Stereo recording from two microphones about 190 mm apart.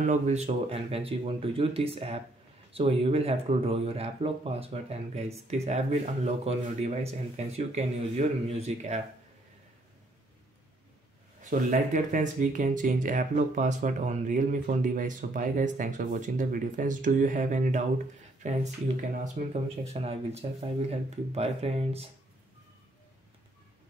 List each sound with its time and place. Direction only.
0.0 s speech: 40° right (ahead or behind)
11.4 s speech: 40° right (ahead or behind)